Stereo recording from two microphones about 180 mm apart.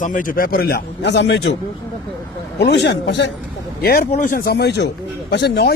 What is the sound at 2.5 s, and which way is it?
Speech, 65° left (ahead or behind).